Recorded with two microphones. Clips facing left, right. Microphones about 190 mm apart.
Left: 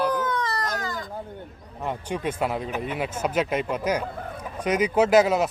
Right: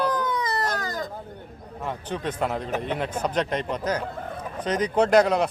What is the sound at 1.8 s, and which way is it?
A man's voice, 10° left (ahead or behind).